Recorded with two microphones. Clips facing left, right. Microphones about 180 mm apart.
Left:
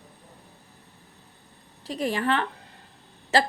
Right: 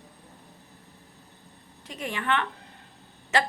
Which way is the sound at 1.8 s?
35° left (ahead or behind).